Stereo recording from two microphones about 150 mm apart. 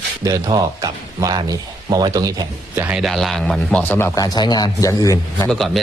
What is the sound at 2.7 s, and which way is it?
Speech, 10° right (ahead or behind).